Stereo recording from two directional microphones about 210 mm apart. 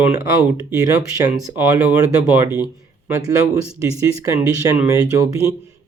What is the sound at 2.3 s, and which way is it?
Speech, 10° right (ahead or behind).